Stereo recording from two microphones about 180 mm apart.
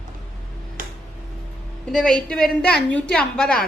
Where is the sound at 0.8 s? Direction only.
50° right (ahead or behind).